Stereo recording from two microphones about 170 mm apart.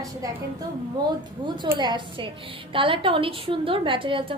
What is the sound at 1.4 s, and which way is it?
A woman's voice, 25° right (ahead or behind).